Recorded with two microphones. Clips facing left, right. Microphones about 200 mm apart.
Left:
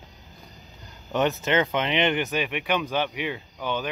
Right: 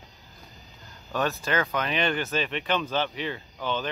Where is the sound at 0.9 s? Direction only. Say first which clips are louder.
Left 4 dB; 20° left (ahead or behind).